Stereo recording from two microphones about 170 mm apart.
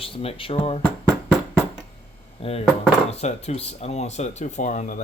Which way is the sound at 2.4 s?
35° left (ahead or behind).